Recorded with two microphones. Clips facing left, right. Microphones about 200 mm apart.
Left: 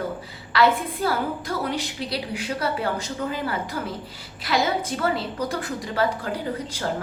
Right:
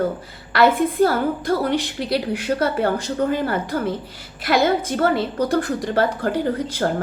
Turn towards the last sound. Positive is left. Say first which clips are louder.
# right 6 dB
turn(degrees=-50)  # may be behind; listen again after turning